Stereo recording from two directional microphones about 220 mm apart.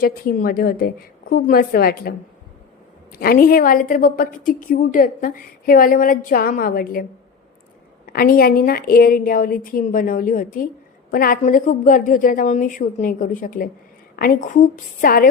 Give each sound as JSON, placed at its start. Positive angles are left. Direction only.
{"t": 0.0, "sound": "a woman's voice", "side_deg": 40}
{"t": 8.0, "sound": "a woman's voice", "side_deg": 40}